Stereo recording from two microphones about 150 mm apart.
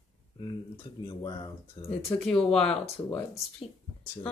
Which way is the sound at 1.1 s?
30° left (ahead or behind).